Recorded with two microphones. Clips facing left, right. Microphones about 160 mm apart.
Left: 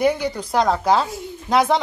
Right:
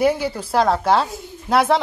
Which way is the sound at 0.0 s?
5° right (ahead or behind).